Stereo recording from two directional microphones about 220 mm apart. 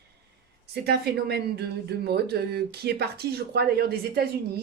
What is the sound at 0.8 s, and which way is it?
Speech, 45° right (ahead or behind).